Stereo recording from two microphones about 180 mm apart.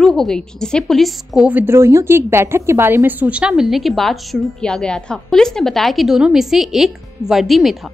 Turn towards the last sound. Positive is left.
turn(degrees=0)  # may be behind; listen again after turning